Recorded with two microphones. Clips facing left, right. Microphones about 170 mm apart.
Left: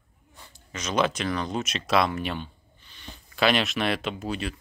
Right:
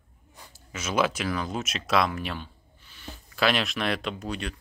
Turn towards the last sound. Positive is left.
turn(degrees=0)  # may be behind; listen again after turning